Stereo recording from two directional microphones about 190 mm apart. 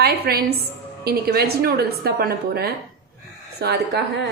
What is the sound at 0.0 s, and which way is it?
A woman's voice, 55° right (ahead or behind).